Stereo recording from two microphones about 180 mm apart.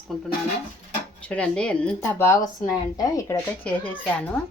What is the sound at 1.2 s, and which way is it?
Speech, 5° left (ahead or behind).